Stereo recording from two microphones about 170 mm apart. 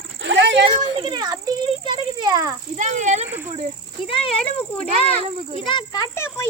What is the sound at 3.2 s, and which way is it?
Speech, 10° right (ahead or behind).